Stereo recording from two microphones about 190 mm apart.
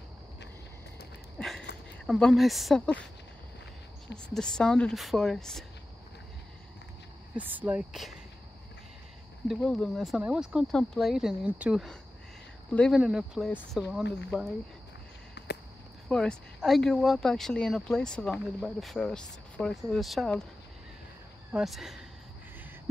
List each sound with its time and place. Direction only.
1.4 s a sound: centre (ahead or behind)
2.0 s speech: centre (ahead or behind)
4.3 s speech: 5° left (ahead or behind)
7.3 s speech: 10° right (ahead or behind)
9.5 s speech: centre (ahead or behind)
15.4 s a sound: 60° left (ahead or behind)
16.1 s speech: 5° left (ahead or behind)
21.5 s speech: centre (ahead or behind)